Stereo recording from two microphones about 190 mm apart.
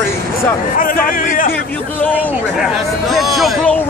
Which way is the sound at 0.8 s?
45° left (ahead or behind).